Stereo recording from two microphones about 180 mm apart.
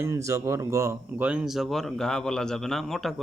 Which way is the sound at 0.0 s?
15° right (ahead or behind).